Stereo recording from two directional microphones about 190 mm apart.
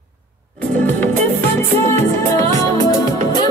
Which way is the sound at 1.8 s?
15° left (ahead or behind).